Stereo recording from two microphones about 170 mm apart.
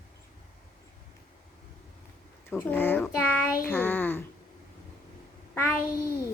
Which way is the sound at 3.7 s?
10° left (ahead or behind).